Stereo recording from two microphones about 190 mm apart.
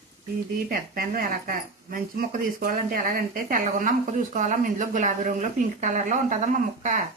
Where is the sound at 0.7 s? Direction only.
45° right (ahead or behind).